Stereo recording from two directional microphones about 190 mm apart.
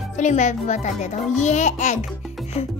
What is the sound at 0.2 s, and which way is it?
A child's voice, 40° left (ahead or behind).